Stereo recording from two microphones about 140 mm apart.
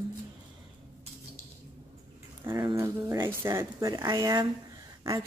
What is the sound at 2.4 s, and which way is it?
Speech, 35° right (ahead or behind).